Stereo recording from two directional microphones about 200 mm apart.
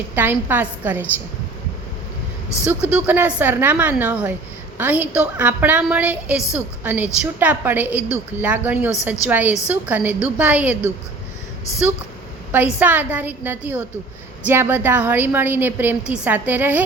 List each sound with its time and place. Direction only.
0.2 s a woman's voice: 10° right (ahead or behind)
2.6 s a woman's voice: 5° right (ahead or behind)
12.5 s a woman's voice: 10° right (ahead or behind)